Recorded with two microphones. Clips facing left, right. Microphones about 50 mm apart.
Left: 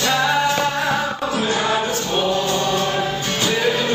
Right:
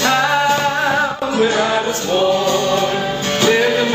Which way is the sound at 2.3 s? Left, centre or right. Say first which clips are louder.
Right 4 dB; right.